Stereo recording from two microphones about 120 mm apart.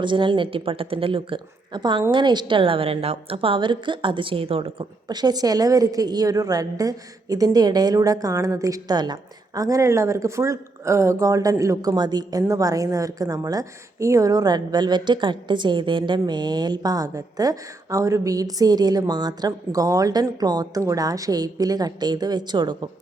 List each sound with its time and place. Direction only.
0.0 s a woman's voice: 40° right (ahead or behind)
5.0 s speech: 35° right (ahead or behind)